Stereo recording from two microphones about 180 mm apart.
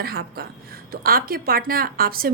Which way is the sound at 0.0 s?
55° right (ahead or behind).